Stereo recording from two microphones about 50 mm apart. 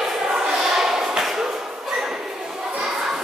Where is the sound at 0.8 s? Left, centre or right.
Centre.